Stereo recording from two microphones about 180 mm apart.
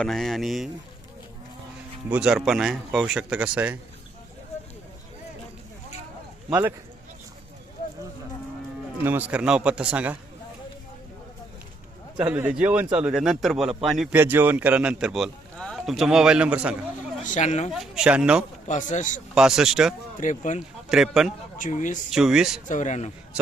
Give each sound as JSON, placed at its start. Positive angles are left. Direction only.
{"t": 0.0, "sound": "a man's voice", "side_deg": 0}
{"t": 2.0, "sound": "a man's voice", "side_deg": -5}
{"t": 6.5, "sound": "a man's voice", "side_deg": -10}
{"t": 9.0, "sound": "a man's voice", "side_deg": -10}
{"t": 12.1, "sound": "a man's voice", "side_deg": -10}
{"t": 17.2, "sound": "speech", "side_deg": 40}
{"t": 17.7, "sound": "a man's voice", "side_deg": 0}
{"t": 18.7, "sound": "speech", "side_deg": 45}
{"t": 19.3, "sound": "a man's voice", "side_deg": -5}
{"t": 20.1, "sound": "speech", "side_deg": 45}
{"t": 20.6, "sound": "a man's voice", "side_deg": 0}
{"t": 21.6, "sound": "speech", "side_deg": 45}
{"t": 22.1, "sound": "a man's voice", "side_deg": 0}
{"t": 22.6, "sound": "speech", "side_deg": 45}